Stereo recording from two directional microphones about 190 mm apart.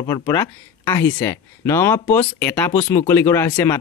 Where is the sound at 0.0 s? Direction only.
15° left (ahead or behind).